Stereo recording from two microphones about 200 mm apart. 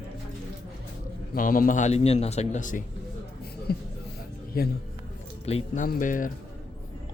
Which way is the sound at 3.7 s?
50° left (ahead or behind).